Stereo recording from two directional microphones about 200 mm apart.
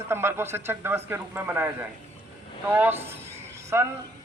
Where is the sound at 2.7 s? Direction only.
10° right (ahead or behind).